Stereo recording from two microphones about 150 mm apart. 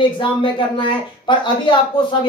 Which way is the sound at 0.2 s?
35° left (ahead or behind).